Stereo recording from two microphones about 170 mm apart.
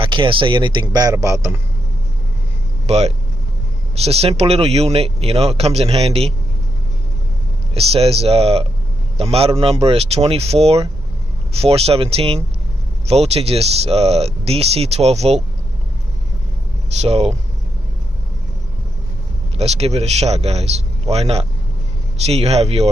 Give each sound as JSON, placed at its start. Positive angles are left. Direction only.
{"t": 0.0, "sound": "speech", "side_deg": -30}
{"t": 2.9, "sound": "speech", "side_deg": -40}
{"t": 7.7, "sound": "speech", "side_deg": -35}
{"t": 17.0, "sound": "speech", "side_deg": -40}
{"t": 19.5, "sound": "speech", "side_deg": -35}